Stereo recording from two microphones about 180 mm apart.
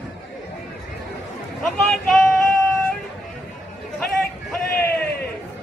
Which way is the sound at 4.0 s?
5° left (ahead or behind).